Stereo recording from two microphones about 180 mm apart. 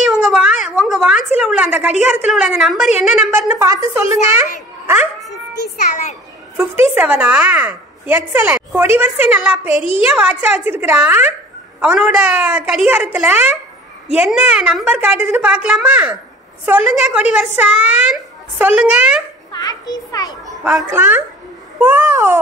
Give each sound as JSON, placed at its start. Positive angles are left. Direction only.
{"t": 0.0, "sound": "speech", "side_deg": -5}
{"t": 6.5, "sound": "a woman's voice", "side_deg": -5}
{"t": 19.5, "sound": "a child's voice", "side_deg": 20}
{"t": 20.9, "sound": "a woman's voice", "side_deg": -10}